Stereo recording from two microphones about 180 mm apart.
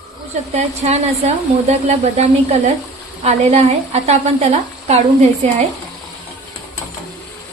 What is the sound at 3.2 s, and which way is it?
Speech, 35° right (ahead or behind).